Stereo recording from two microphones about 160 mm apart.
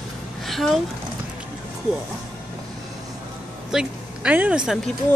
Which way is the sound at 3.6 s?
5° right (ahead or behind).